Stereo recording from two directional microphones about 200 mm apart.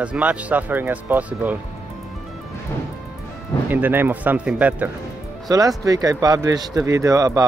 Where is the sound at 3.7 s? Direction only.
10° right (ahead or behind).